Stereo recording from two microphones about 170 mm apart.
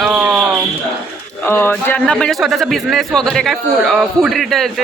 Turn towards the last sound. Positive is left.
turn(degrees=0)  # may be behind; listen again after turning